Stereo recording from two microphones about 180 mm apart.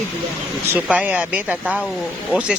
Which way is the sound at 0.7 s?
10° right (ahead or behind).